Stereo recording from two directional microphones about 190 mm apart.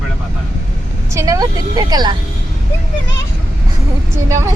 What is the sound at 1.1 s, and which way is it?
Speech, 20° right (ahead or behind).